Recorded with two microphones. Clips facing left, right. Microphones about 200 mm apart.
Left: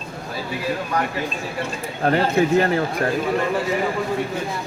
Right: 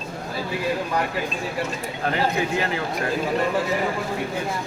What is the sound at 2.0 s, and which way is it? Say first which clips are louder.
Speech: left 6 dB; 45° left (ahead or behind).